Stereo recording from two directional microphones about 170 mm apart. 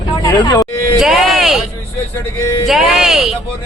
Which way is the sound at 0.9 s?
5° right (ahead or behind).